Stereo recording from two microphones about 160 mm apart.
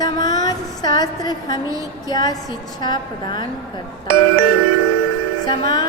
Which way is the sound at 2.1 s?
25° left (ahead or behind).